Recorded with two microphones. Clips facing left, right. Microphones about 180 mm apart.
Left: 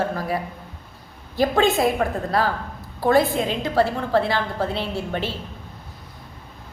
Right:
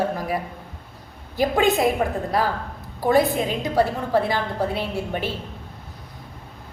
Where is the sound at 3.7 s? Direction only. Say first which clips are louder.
Even; 15° right (ahead or behind).